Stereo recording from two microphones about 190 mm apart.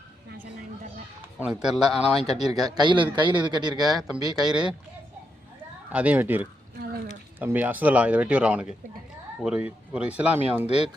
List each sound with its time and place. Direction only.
1.4 s a man's voice: 5° right (ahead or behind)
2.2 s speech: 35° left (ahead or behind)
2.6 s a man's voice: 20° right (ahead or behind)
3.9 s a man's voice: centre (ahead or behind)
5.9 s speech: 10° right (ahead or behind)